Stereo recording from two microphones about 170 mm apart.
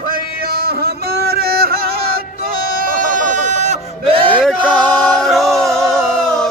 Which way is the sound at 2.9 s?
50° right (ahead or behind).